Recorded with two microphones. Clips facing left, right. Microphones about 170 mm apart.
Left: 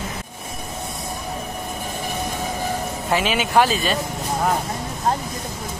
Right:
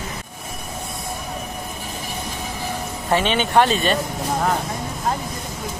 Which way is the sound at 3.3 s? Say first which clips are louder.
Right 1 dB; 5° left (ahead or behind).